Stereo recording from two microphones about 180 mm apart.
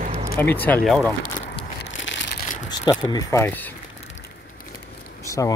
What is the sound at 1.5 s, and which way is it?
Crushing, 80° left.